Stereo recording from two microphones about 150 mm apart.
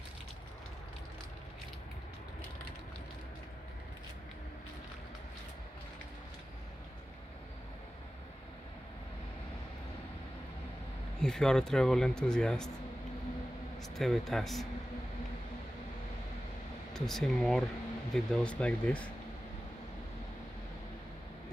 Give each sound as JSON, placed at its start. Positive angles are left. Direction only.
{"t": 11.1, "sound": "speech", "side_deg": 5}
{"t": 13.9, "sound": "speech", "side_deg": 0}
{"t": 16.9, "sound": "speech", "side_deg": 0}